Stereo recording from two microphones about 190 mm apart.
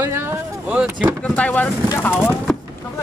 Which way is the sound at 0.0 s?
15° right (ahead or behind).